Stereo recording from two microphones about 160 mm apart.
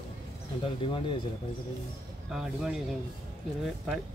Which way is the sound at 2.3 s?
5° right (ahead or behind).